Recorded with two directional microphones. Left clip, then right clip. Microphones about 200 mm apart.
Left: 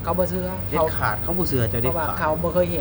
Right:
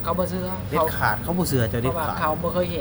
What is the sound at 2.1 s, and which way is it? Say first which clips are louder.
Speech: left 2 dB; 10° left (ahead or behind).